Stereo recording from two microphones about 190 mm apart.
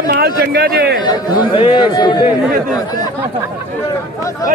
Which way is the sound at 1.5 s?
25° left (ahead or behind).